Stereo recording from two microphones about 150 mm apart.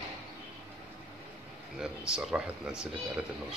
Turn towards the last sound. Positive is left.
turn(degrees=-5)  # may be behind; listen again after turning